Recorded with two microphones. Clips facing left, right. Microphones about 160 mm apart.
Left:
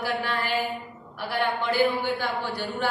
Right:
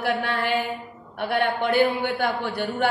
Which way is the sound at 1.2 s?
55° right (ahead or behind).